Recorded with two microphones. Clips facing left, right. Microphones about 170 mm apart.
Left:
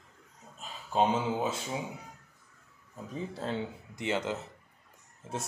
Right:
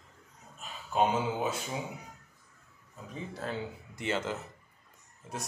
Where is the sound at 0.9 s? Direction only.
25° left (ahead or behind).